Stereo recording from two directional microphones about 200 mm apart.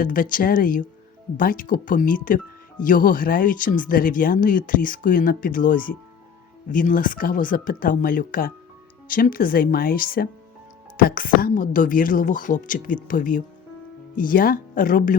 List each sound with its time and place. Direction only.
0.0 s speech: 45° left (ahead or behind)